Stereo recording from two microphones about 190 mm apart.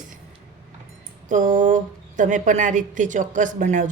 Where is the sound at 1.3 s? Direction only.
45° right (ahead or behind).